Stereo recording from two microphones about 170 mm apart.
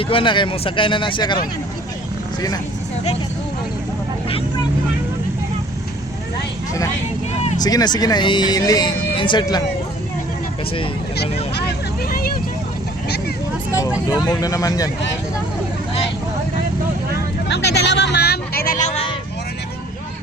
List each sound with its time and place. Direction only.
0.0 s speech: 30° left (ahead or behind)
7.3 s vehicle: 40° left (ahead or behind)
7.6 s speech: 25° left (ahead or behind)
12.0 s vehicle: 60° left (ahead or behind)
13.7 s speech: 20° left (ahead or behind)
17.5 s a sound: 80° left; by 19.1 s 40° left (ahead or behind)